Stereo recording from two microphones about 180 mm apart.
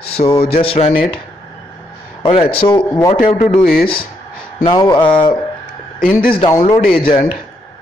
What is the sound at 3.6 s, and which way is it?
Speech, 55° left (ahead or behind).